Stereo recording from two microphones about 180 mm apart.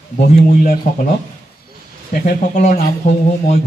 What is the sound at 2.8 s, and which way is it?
Speech, 40° left (ahead or behind).